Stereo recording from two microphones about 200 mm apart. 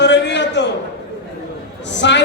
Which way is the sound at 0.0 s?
60° left (ahead or behind).